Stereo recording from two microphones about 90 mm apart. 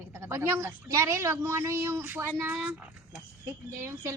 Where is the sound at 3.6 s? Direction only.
30° right (ahead or behind).